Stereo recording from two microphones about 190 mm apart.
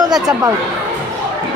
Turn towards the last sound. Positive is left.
turn(degrees=-20)  # may be behind; listen again after turning